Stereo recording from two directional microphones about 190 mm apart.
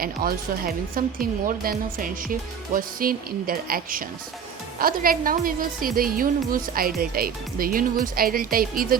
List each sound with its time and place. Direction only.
0.0 s a woman's voice: 50° right (ahead or behind)